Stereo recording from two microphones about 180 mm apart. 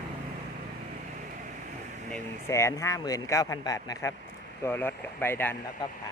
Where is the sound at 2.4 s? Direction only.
15° left (ahead or behind).